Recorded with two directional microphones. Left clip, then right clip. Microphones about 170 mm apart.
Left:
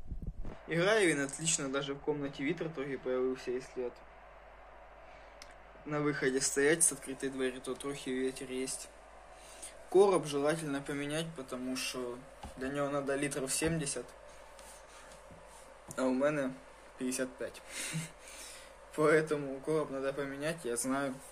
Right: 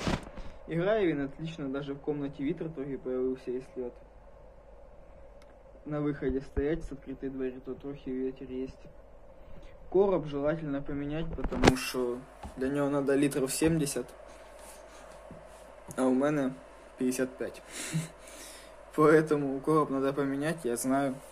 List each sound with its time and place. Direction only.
0.7 s speech: 10° left (ahead or behind)
5.9 s speech: 5° left (ahead or behind); by 8.7 s 30° left (ahead or behind)
9.9 s speech: 15° left (ahead or behind)
11.7 s a man's voice: 10° right (ahead or behind)
15.9 s a man's voice: 10° right (ahead or behind)